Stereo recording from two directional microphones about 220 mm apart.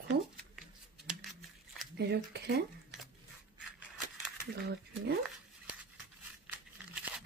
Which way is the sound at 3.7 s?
5° right (ahead or behind).